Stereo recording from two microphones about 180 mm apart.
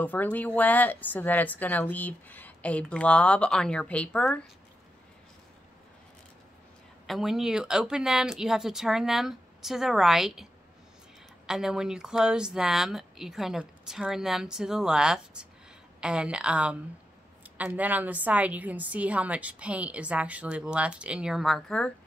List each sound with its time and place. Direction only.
0.0 s speech: 10° left (ahead or behind)
7.1 s a woman's voice: centre (ahead or behind)